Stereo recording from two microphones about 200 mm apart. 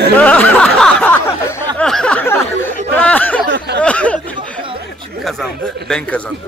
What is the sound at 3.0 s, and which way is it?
Speech, 10° left (ahead or behind).